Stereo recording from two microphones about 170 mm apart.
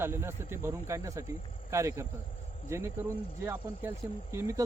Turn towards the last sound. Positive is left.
turn(degrees=-15)  # may be behind; listen again after turning